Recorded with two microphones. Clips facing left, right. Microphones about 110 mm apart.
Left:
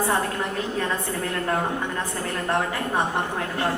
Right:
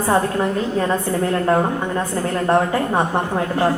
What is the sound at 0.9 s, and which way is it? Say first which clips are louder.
A woman's voice: right 8 dB; 25° right (ahead or behind).